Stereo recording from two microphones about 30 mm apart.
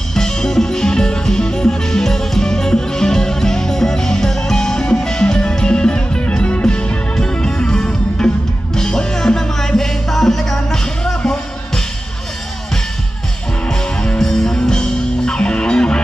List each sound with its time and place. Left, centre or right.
0.1 s music: centre
13.7 s music: left